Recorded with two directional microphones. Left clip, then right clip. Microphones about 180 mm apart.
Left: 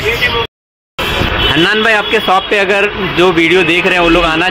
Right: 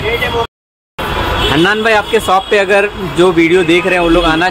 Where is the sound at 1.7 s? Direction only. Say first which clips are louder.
Even; 10° right (ahead or behind).